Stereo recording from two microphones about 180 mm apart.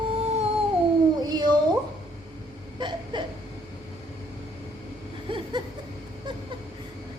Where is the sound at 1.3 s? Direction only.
25° right (ahead or behind).